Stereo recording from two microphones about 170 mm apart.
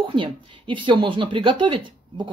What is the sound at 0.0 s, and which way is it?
Speech, 30° right (ahead or behind).